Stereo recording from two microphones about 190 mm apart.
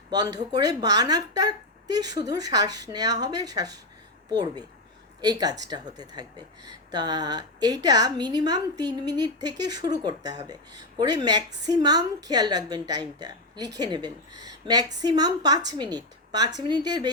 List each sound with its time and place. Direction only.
0.1 s speech: 20° right (ahead or behind)